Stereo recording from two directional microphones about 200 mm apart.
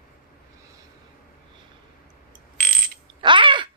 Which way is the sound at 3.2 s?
25° right (ahead or behind).